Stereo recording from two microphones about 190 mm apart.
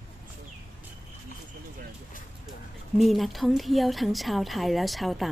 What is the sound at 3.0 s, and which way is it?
A woman's voice, centre (ahead or behind).